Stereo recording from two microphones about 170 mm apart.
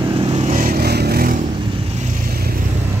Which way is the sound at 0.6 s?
55° right (ahead or behind).